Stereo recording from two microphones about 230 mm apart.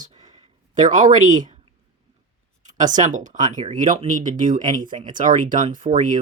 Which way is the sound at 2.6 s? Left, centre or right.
Right.